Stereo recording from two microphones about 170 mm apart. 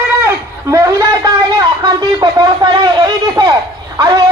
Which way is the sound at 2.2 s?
25° right (ahead or behind).